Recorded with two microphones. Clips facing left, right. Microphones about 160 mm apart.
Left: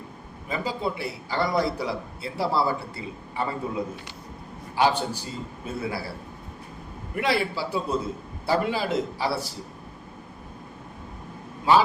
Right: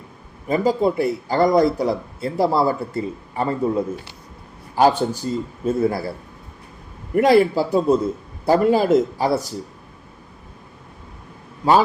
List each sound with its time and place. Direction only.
0.4 s a man's voice: 45° right (ahead or behind)
4.7 s a man's voice: 45° right (ahead or behind)
7.2 s a man's voice: 45° right (ahead or behind)
11.6 s a man's voice: 40° right (ahead or behind)